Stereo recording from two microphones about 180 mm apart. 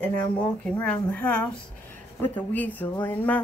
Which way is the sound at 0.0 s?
5° left (ahead or behind).